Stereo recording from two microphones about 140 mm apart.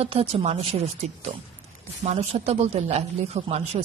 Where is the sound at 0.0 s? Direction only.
45° right (ahead or behind).